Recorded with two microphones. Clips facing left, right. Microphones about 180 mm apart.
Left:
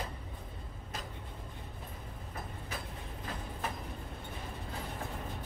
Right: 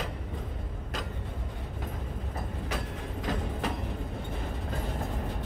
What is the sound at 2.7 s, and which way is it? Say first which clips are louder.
Train: right 8 dB; 90° right.